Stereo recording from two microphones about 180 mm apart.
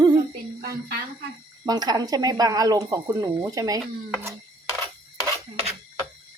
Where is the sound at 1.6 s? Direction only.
20° right (ahead or behind).